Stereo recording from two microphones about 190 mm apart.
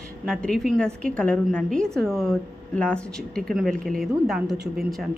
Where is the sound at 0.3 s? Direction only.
Centre (ahead or behind).